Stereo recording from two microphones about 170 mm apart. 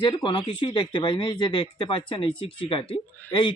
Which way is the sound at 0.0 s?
30° left (ahead or behind).